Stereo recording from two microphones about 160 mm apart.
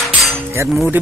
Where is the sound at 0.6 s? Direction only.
Centre (ahead or behind).